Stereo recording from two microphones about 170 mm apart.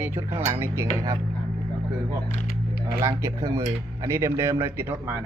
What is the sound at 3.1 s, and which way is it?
Speech, 15° right (ahead or behind).